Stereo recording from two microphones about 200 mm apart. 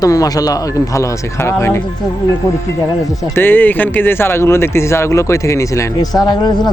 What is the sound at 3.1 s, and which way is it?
Speech, 15° left (ahead or behind).